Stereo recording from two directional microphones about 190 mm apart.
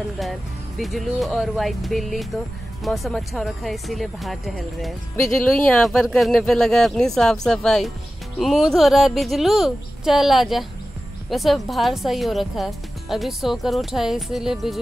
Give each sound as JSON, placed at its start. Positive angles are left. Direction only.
{"t": 0.2, "sound": "speech", "side_deg": 0}